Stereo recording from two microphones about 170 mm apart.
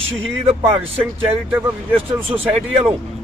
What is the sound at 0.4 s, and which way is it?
Speech, 35° right (ahead or behind).